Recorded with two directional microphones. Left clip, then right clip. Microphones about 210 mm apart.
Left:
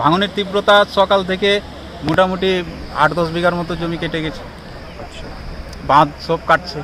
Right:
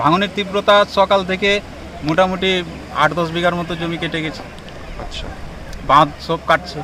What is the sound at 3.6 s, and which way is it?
Speech, 5° left (ahead or behind).